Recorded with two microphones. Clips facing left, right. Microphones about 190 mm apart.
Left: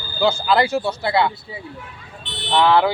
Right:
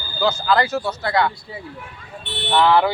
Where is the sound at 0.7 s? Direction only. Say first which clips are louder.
Left 2 dB; 25° left (ahead or behind).